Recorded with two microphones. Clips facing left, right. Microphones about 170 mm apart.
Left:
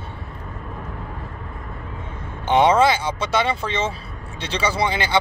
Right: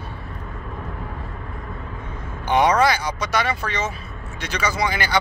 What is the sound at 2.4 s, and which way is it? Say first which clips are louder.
Speech: left 2 dB; 25° left (ahead or behind).